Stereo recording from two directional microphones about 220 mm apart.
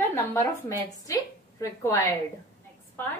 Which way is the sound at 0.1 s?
10° left (ahead or behind).